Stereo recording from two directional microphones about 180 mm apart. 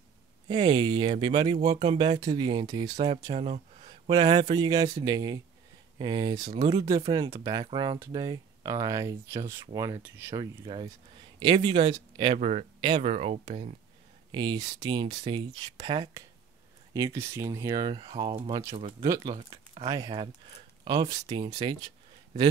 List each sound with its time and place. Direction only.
0.5 s speech: 25° right (ahead or behind)
3.3 s a sound: 35° right (ahead or behind)
4.2 s speech: 25° right (ahead or behind)
10.3 s speech: 25° right (ahead or behind)
14.3 s speech: 25° right (ahead or behind)